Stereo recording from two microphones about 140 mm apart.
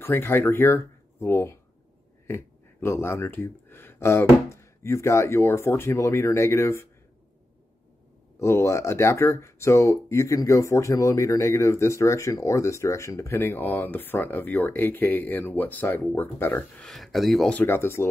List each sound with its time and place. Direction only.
0.0 s speech: 15° left (ahead or behind)
8.4 s speech: 20° left (ahead or behind)
16.8 s speech: centre (ahead or behind)
17.6 s speech: 15° left (ahead or behind)